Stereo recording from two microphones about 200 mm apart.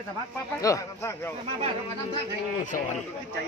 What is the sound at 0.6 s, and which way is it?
Speech, 15° left (ahead or behind).